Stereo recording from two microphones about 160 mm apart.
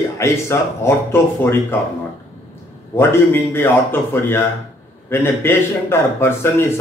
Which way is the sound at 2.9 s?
15° left (ahead or behind).